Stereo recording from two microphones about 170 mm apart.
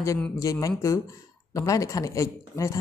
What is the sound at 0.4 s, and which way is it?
Speech, 20° left (ahead or behind).